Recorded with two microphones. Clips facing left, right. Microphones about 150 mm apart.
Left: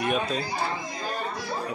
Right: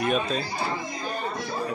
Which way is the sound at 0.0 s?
10° left (ahead or behind).